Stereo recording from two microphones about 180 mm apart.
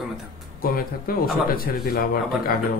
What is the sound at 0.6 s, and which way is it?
Speech, 55° left (ahead or behind).